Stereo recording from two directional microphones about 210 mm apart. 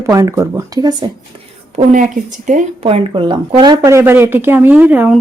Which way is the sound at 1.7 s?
35° right (ahead or behind).